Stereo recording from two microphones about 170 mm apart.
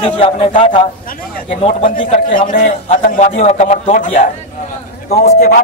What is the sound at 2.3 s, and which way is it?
A man's voice, 55° left (ahead or behind).